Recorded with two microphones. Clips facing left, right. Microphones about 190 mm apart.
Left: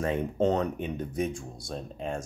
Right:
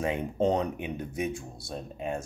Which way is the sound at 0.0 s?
15° right (ahead or behind).